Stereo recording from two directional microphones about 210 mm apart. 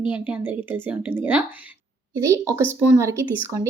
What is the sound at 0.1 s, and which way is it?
Speech, 10° right (ahead or behind).